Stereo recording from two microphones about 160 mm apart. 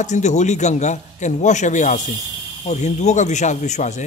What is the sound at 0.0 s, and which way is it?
A man's voice, 45° left (ahead or behind).